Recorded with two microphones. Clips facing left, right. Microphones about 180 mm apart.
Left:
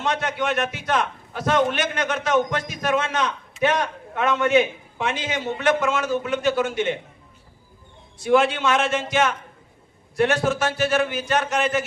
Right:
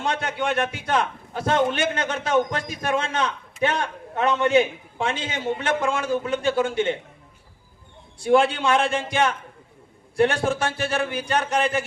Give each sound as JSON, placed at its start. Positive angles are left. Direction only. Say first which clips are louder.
{"t": 0.0, "sound": "a man's voice", "louder": "left 1 dB", "side_deg": -30}
{"t": 8.2, "sound": "a man's voice", "louder": "even", "side_deg": -30}